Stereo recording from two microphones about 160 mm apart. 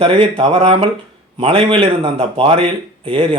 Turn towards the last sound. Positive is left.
turn(degrees=-35)  # may be behind; listen again after turning